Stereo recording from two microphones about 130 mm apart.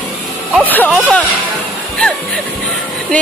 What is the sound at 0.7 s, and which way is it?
Speech, 15° left (ahead or behind).